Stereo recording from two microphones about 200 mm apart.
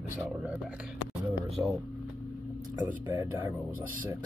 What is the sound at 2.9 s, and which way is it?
Speech, 10° right (ahead or behind).